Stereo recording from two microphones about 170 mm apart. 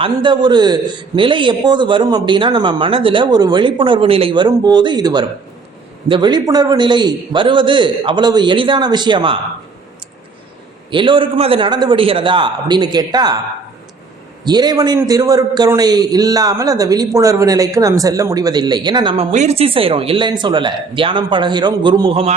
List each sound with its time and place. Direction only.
0.0 s a man's voice: 30° right (ahead or behind)
10.9 s a man's voice: 30° right (ahead or behind)
14.4 s a man's voice: 25° right (ahead or behind)